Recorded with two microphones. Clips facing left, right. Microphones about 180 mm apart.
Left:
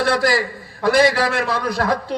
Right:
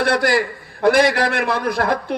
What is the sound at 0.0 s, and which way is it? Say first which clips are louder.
A man's voice: right 1 dB; 55° right (ahead or behind).